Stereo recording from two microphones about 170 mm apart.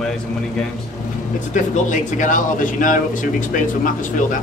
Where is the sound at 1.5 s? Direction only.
50° left (ahead or behind).